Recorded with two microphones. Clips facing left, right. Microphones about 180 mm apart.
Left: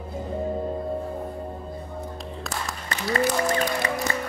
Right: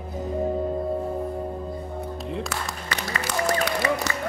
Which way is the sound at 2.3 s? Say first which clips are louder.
Right 3 dB; 75° right (ahead or behind).